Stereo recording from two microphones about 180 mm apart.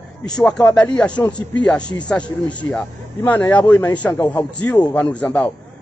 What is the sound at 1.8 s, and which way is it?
Speech, 25° left (ahead or behind).